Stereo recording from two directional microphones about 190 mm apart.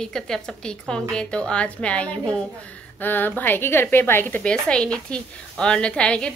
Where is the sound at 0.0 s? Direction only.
5° left (ahead or behind).